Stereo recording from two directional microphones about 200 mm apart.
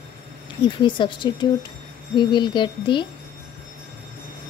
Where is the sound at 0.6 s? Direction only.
25° left (ahead or behind).